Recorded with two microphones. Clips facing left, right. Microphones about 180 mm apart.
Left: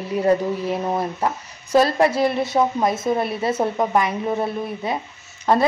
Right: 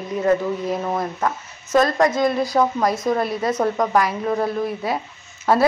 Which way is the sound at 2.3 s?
25° left (ahead or behind).